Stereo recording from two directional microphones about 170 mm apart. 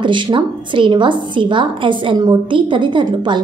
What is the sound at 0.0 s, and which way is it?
A woman's voice, 30° right (ahead or behind).